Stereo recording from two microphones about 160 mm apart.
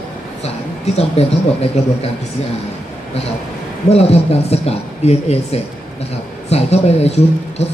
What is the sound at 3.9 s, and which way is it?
Speech, 40° left (ahead or behind).